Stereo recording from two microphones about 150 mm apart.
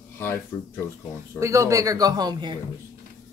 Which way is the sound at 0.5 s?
15° left (ahead or behind).